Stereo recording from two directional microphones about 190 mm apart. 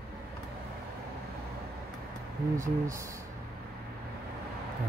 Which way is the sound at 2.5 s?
15° right (ahead or behind).